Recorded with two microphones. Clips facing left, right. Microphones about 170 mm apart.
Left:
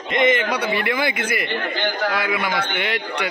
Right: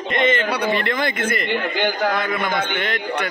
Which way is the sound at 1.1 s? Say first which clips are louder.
Right 2 dB; 50° right (ahead or behind).